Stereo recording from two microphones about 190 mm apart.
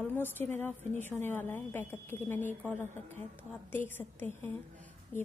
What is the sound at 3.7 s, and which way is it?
Speech, 10° left (ahead or behind).